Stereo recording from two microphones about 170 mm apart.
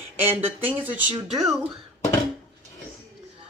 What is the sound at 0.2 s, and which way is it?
Speech, 10° right (ahead or behind).